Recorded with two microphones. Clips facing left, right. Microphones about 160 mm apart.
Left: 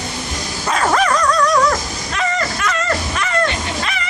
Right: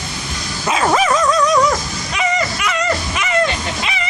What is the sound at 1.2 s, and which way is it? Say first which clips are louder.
Dog: right 1 dB; 20° right (ahead or behind).